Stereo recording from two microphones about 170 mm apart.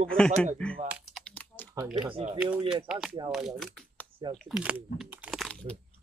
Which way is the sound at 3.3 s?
Centre (ahead or behind).